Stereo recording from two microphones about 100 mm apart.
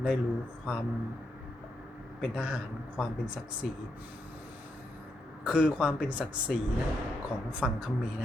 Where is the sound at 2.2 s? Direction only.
10° right (ahead or behind).